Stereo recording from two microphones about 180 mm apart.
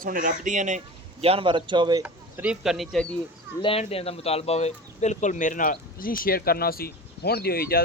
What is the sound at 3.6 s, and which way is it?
Speech, 30° left (ahead or behind).